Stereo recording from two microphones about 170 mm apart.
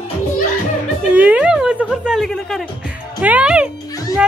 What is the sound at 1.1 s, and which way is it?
Music, 10° right (ahead or behind).